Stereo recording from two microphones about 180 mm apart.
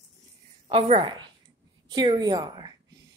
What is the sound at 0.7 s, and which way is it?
A woman's voice, 30° right (ahead or behind).